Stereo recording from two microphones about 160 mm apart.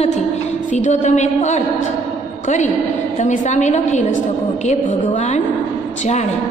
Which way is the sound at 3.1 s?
50° left (ahead or behind).